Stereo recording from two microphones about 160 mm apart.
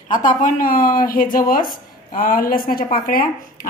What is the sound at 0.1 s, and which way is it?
A woman's voice, 55° left (ahead or behind).